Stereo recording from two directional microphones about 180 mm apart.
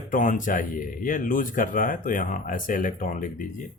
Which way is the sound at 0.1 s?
50° left (ahead or behind).